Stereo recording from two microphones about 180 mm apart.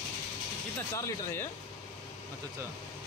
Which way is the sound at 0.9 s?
15° left (ahead or behind).